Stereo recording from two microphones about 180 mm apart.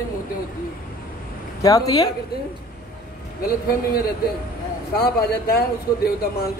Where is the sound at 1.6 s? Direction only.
20° left (ahead or behind).